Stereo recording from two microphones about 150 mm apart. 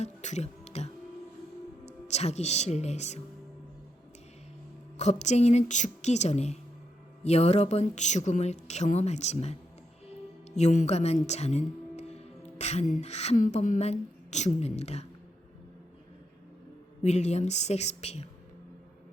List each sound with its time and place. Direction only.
0.0 s music: 50° left (ahead or behind)
1.9 s speech: 50° left (ahead or behind)
4.9 s a woman's voice: 50° left (ahead or behind)
17.0 s speech: 50° left (ahead or behind)